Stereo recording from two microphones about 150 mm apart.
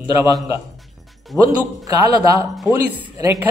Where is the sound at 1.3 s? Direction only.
10° right (ahead or behind).